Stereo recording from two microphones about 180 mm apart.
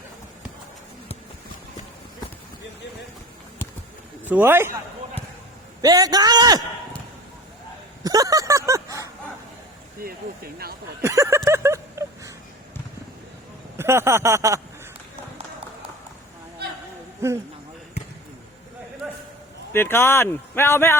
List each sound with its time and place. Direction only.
4.3 s speech: 10° right (ahead or behind)
5.8 s a man's voice: 20° right (ahead or behind)
8.0 s a sound: 20° right (ahead or behind)
10.0 s speech: 55° right (ahead or behind)
11.0 s a sound: 15° right (ahead or behind)
13.7 s speech: 15° right (ahead or behind)
19.7 s speech: 10° left (ahead or behind)